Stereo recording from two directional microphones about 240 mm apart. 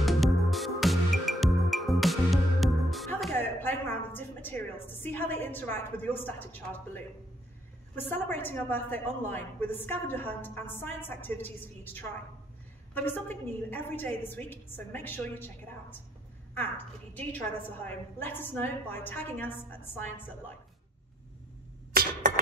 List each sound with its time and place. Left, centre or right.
0.0 s music: centre
7.9 s a woman's voice: centre
21.9 s a sound: right